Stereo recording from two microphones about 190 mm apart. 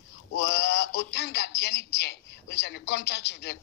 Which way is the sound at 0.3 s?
65° left (ahead or behind).